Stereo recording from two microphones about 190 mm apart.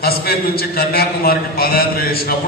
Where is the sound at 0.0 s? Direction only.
55° left (ahead or behind).